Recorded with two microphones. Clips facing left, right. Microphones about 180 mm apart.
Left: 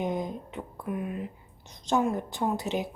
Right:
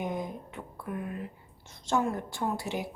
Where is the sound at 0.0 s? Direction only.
20° left (ahead or behind).